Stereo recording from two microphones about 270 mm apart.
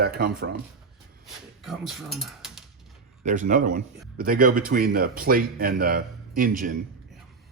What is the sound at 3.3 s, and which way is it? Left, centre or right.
Speech, right.